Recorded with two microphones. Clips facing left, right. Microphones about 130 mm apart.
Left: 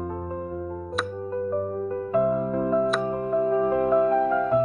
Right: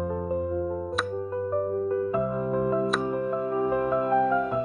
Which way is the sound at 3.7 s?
20° left (ahead or behind).